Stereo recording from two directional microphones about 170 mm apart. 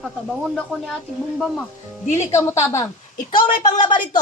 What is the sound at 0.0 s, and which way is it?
Speech, centre (ahead or behind).